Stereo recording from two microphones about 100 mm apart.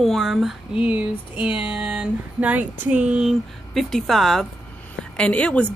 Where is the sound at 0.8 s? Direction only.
15° right (ahead or behind); by 4.5 s centre (ahead or behind).